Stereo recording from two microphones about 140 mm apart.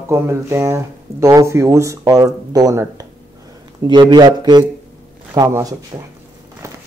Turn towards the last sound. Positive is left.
turn(degrees=-25)  # may be behind; listen again after turning